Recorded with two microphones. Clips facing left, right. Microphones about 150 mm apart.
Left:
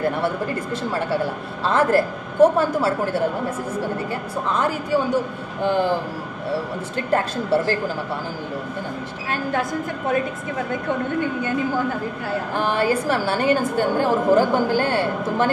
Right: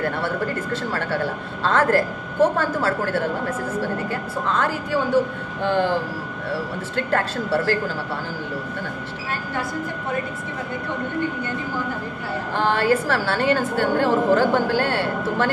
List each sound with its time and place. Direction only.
1.7 s a woman's voice: 15° left (ahead or behind)
4.5 s a woman's voice: 15° left (ahead or behind)
7.1 s a woman's voice: 20° left (ahead or behind)
12.5 s a woman's voice: 15° left (ahead or behind)